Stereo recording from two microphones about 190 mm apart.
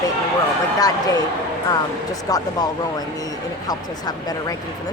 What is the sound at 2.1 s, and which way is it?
Speech, 20° left (ahead or behind).